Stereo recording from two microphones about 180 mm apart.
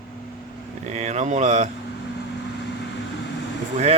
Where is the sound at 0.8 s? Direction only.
40° right (ahead or behind).